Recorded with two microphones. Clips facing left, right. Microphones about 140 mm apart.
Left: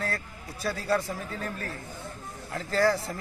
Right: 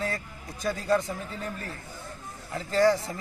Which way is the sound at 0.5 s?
5° left (ahead or behind).